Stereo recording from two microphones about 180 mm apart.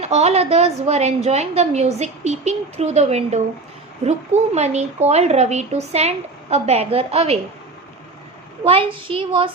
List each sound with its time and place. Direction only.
0.0 s a woman's voice: 35° right (ahead or behind)
8.6 s a child's voice: 30° right (ahead or behind)